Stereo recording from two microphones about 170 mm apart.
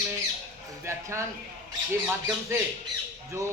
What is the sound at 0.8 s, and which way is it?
Speech, 15° right (ahead or behind).